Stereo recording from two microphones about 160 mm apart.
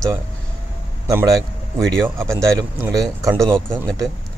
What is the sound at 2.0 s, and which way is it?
Speech, 15° right (ahead or behind).